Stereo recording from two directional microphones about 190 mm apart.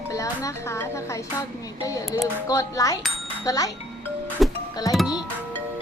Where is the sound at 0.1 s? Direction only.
15° left (ahead or behind).